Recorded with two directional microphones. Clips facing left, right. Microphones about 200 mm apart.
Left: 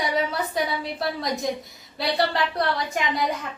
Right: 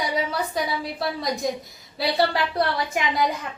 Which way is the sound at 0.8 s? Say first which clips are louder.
Even; centre (ahead or behind).